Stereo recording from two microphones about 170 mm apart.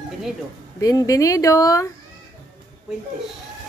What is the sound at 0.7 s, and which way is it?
Speech, 20° left (ahead or behind).